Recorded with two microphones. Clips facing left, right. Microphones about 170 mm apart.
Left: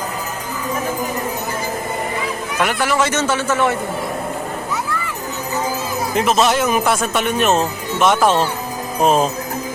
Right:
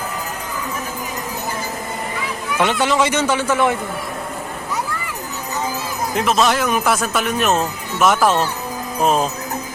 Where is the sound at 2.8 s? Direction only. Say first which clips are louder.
Left 1 dB; 15° right (ahead or behind).